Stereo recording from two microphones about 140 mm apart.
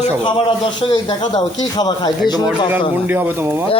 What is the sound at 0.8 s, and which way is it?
A man's voice, 30° left (ahead or behind).